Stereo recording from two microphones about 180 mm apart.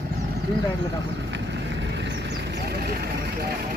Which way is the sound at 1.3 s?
75° right (ahead or behind).